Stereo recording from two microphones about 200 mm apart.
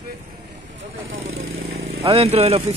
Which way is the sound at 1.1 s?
80° right.